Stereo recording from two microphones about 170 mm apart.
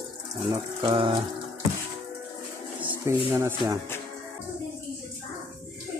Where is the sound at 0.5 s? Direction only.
30° right (ahead or behind).